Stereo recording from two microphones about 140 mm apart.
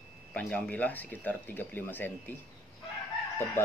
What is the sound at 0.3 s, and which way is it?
Speech, 10° left (ahead or behind).